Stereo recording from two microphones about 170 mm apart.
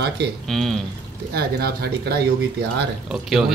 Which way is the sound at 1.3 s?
70° right (ahead or behind).